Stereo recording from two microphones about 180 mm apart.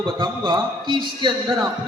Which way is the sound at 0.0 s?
25° right (ahead or behind).